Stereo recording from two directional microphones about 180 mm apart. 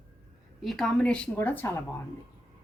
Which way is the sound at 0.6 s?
Centre (ahead or behind).